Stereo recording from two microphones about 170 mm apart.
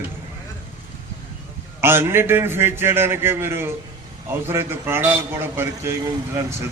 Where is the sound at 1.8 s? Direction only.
15° right (ahead or behind).